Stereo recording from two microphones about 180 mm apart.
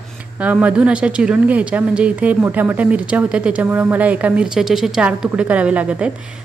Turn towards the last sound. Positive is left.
turn(degrees=-5)  # may be behind; listen again after turning